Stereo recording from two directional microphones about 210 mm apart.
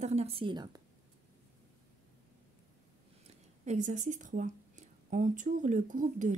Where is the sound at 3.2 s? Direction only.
35° right (ahead or behind).